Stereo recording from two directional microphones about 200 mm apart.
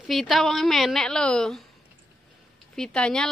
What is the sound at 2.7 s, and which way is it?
Speech, 5° left (ahead or behind).